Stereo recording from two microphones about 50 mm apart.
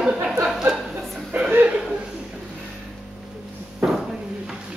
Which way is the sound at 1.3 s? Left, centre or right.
Right.